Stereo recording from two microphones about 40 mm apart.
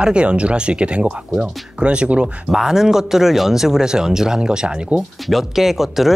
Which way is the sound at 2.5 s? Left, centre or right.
Centre.